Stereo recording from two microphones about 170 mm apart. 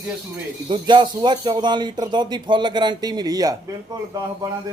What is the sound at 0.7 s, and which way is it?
Speech, 30° right (ahead or behind).